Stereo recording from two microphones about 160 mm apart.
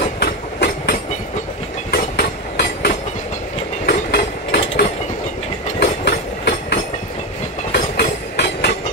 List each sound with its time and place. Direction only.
0.2 s train: 90° left
1.9 s train: 75° left (ahead or behind)